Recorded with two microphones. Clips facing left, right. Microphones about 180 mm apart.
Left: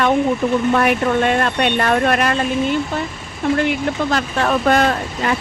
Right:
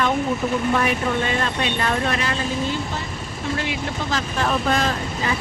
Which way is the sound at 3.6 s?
60° left (ahead or behind).